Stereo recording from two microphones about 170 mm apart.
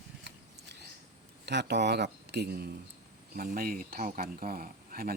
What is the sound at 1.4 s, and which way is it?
Speech, 85° right.